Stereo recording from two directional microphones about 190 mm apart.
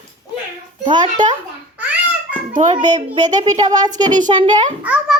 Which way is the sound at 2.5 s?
45° right (ahead or behind).